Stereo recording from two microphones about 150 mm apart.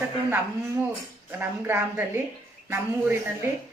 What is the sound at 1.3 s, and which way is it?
Speech, 15° right (ahead or behind).